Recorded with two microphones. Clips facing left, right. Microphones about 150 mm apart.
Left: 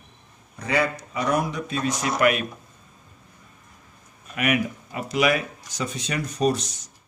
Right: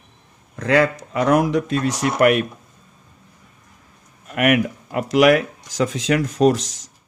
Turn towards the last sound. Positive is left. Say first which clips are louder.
# right 6 dB
turn(degrees=-90)